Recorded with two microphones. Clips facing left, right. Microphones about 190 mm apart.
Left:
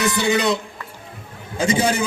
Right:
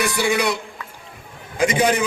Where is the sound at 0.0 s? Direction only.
20° left (ahead or behind).